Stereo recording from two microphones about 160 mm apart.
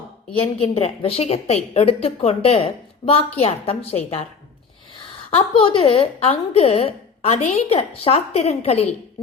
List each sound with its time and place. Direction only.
0.3 s a woman's voice: 35° left (ahead or behind)
5.3 s a woman's voice: 35° left (ahead or behind)